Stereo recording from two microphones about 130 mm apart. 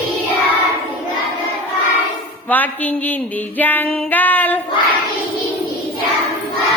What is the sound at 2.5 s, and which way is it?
Music, 15° left (ahead or behind).